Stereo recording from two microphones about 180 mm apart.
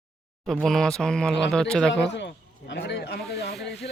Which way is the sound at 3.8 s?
65° left (ahead or behind).